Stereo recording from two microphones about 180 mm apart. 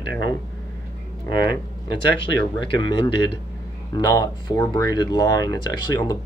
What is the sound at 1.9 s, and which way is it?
Speech, 25° left (ahead or behind).